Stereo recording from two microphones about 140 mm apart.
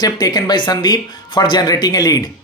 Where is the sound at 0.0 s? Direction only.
30° left (ahead or behind).